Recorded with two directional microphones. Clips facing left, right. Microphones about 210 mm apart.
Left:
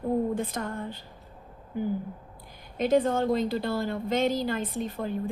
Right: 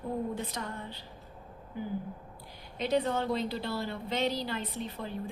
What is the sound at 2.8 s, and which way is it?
A woman's voice, 50° left (ahead or behind).